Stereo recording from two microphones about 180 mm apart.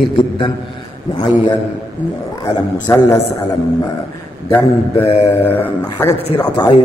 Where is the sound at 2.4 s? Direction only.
15° left (ahead or behind).